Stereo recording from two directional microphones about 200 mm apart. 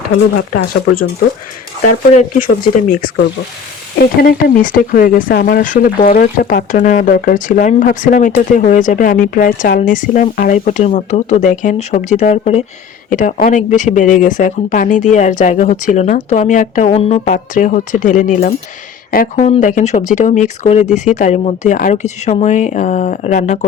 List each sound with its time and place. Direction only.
2.1 s speech: 40° left (ahead or behind)
4.2 s speech: 45° left (ahead or behind)